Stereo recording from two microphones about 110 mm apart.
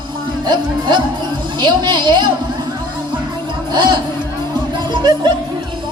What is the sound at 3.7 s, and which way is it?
Speech, 40° right (ahead or behind).